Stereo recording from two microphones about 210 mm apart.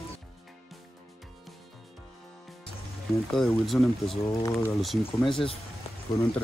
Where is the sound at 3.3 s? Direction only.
Centre (ahead or behind).